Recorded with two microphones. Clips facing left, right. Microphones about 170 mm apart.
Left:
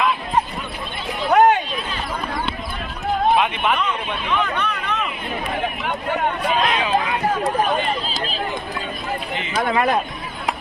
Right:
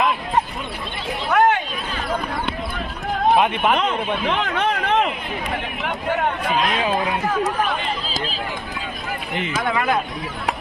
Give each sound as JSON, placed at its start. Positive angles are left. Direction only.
{"t": 1.3, "sound": "a sound", "side_deg": 20}
{"t": 3.3, "sound": "speech", "side_deg": -50}
{"t": 3.8, "sound": "speech", "side_deg": -90}
{"t": 6.7, "sound": "speech", "side_deg": -45}
{"t": 9.3, "sound": "speech", "side_deg": -55}
{"t": 9.6, "sound": "speech", "side_deg": 35}